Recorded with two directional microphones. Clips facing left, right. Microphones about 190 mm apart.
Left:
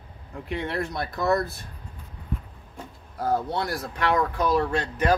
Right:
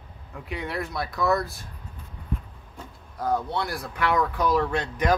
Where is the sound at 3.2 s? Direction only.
30° left (ahead or behind).